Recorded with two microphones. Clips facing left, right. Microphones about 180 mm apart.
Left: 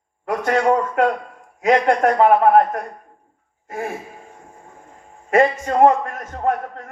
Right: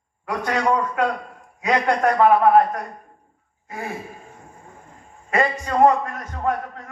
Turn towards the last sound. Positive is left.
turn(degrees=50)  # may be behind; listen again after turning